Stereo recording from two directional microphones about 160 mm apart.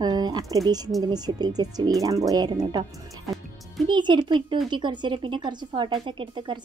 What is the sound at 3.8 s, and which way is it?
A woman's voice, 30° right (ahead or behind).